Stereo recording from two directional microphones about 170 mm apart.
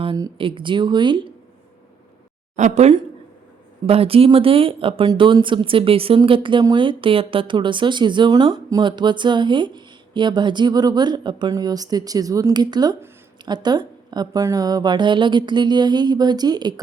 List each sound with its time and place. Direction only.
0.0 s speech: 30° right (ahead or behind)
2.6 s speech: 45° right (ahead or behind); by 16.8 s 25° right (ahead or behind)